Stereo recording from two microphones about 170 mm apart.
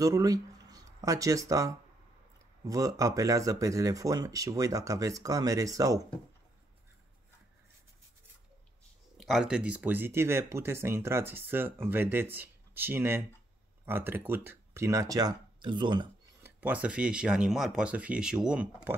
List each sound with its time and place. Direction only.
0.0 s speech: 20° right (ahead or behind)
9.2 s speech: centre (ahead or behind); by 16.1 s 25° right (ahead or behind)
16.4 s speech: 10° right (ahead or behind)